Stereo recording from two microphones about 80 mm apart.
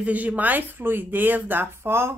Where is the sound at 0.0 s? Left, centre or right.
Centre.